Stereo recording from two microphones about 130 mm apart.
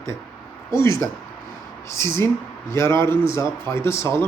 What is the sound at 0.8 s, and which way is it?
A man's voice, 25° left (ahead or behind).